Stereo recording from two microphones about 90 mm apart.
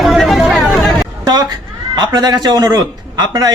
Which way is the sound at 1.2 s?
50° right (ahead or behind).